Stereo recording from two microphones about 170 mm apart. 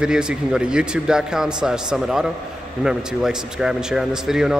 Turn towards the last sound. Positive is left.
turn(degrees=-5)  # may be behind; listen again after turning